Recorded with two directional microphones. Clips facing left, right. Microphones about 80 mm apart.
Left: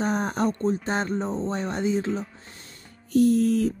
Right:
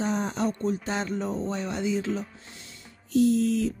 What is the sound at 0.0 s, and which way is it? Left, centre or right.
Speech, left.